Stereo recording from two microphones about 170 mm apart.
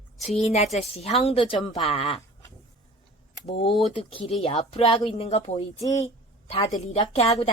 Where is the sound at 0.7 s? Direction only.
40° left (ahead or behind).